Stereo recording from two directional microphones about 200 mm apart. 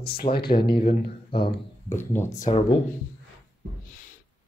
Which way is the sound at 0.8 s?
25° left (ahead or behind).